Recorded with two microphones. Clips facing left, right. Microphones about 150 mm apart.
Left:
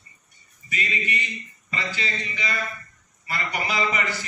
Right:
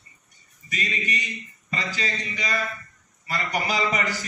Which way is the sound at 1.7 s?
40° right (ahead or behind).